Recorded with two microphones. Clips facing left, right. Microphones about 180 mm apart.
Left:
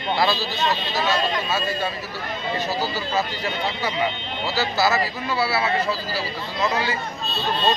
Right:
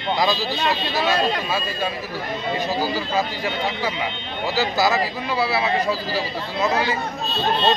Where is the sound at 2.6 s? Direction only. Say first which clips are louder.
Right 2 dB; 15° right (ahead or behind).